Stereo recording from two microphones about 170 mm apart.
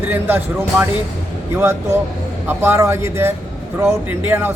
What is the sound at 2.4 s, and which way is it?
Speech, 15° right (ahead or behind).